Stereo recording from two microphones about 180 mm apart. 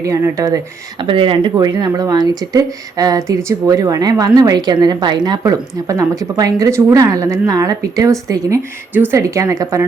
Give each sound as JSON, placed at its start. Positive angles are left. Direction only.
{"t": 0.0, "sound": "speech", "side_deg": -15}
{"t": 1.0, "sound": "speech", "side_deg": -30}